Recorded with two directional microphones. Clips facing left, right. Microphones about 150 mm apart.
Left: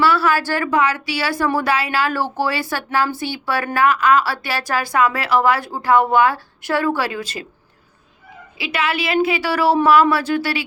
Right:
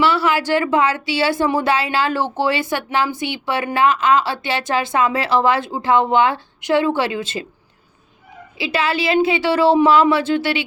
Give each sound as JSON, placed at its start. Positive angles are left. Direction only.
{"t": 0.0, "sound": "speech", "side_deg": -20}
{"t": 8.5, "sound": "speech", "side_deg": -30}